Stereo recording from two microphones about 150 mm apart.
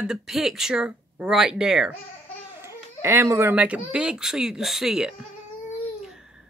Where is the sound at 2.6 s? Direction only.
15° right (ahead or behind).